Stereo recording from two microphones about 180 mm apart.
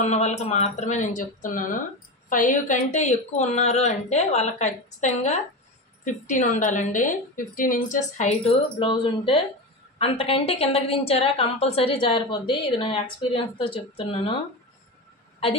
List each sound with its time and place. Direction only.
0.0 s a woman's voice: 40° left (ahead or behind)